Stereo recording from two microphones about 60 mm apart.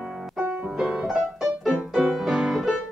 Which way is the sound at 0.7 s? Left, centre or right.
Centre.